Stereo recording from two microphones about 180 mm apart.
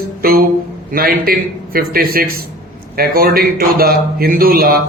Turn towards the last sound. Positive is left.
turn(degrees=-55)  # may be behind; listen again after turning